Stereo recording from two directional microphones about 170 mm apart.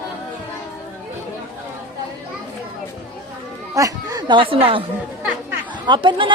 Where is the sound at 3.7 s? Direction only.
20° right (ahead or behind).